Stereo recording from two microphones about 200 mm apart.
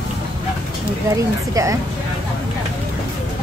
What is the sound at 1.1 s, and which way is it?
Speech, 15° right (ahead or behind).